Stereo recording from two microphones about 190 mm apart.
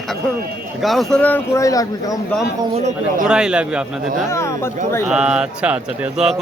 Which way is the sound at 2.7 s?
35° right (ahead or behind).